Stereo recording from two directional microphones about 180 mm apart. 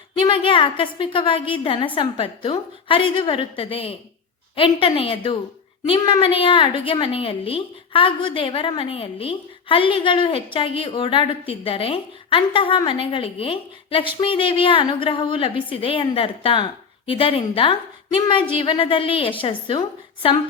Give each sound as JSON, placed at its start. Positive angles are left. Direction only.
{"t": 0.2, "sound": "a woman's voice", "side_deg": 30}